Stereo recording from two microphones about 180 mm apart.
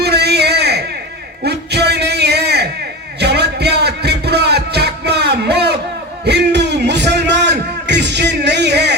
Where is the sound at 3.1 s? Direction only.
65° right (ahead or behind).